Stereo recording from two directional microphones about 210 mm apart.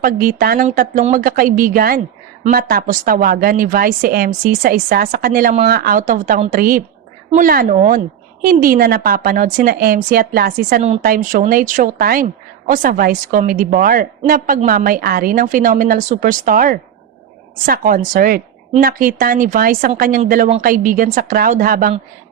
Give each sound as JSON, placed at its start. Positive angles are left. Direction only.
{"t": 0.0, "sound": "a woman's voice", "side_deg": -40}